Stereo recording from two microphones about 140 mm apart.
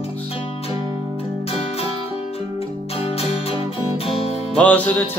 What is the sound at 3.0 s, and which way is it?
Music, 45° left (ahead or behind).